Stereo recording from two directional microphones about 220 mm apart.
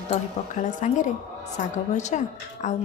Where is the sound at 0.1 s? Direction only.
35° left (ahead or behind).